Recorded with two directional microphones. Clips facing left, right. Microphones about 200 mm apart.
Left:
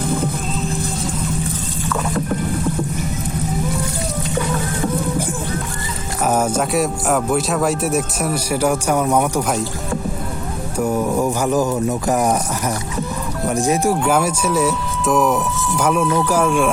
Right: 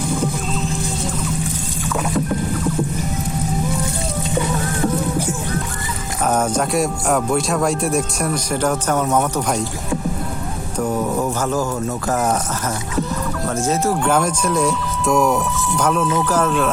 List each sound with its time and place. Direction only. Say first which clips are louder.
0.0 s music: even; 55° left (ahead or behind)
6.2 s speech: left 1 dB; 10° left (ahead or behind)
10.8 s speech: left 2 dB; 15° left (ahead or behind)
13.5 s speech: left 3 dB; 15° left (ahead or behind)